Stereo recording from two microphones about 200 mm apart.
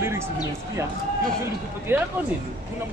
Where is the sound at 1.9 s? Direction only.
10° right (ahead or behind).